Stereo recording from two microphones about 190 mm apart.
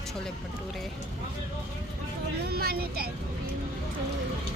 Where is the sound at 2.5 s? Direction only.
55° right (ahead or behind).